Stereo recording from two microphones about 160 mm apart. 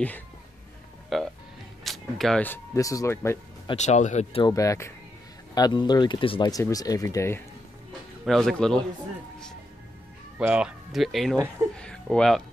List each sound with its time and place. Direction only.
1.1 s burping: centre (ahead or behind)
1.9 s speech: centre (ahead or behind)
3.7 s speech: 45° left (ahead or behind)
4.4 s speech: 20° left (ahead or behind)
6.5 s speech: 20° left (ahead or behind)
8.3 s speech: centre (ahead or behind)
10.4 s speech: 5° right (ahead or behind)